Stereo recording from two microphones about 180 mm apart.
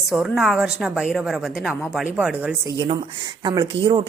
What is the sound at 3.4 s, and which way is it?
Speech, 25° right (ahead or behind).